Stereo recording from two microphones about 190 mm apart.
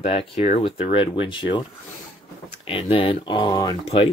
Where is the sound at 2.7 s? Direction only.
30° left (ahead or behind).